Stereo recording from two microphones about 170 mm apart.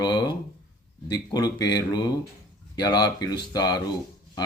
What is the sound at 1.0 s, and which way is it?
Speech, 25° left (ahead or behind).